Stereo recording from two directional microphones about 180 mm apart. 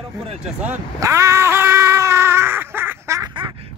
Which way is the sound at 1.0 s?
15° right (ahead or behind).